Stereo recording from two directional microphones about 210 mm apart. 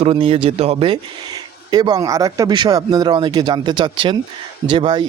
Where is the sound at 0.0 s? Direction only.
25° right (ahead or behind).